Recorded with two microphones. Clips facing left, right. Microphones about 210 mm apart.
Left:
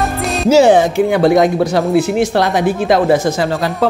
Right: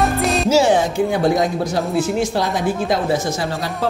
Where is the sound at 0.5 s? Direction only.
75° left (ahead or behind).